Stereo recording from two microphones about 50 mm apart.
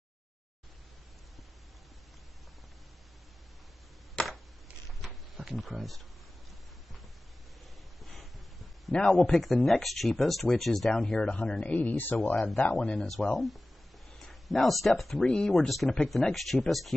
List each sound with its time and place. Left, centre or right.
5.0 s a sound: centre
8.0 s a sound: centre
8.9 s speech: centre
9.4 s speech: centre; by 11.5 s left
11.6 s speech: left
13.0 s speech: centre
14.1 s a sound: centre
14.9 s speech: centre
15.2 s speech: centre
15.7 s speech: centre